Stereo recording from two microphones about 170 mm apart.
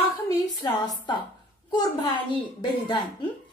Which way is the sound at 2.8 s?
25° left (ahead or behind).